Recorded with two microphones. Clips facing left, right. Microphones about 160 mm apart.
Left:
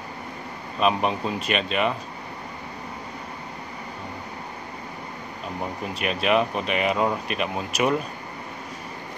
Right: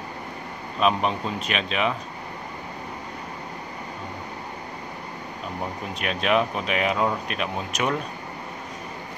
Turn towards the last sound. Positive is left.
turn(degrees=5)  # may be behind; listen again after turning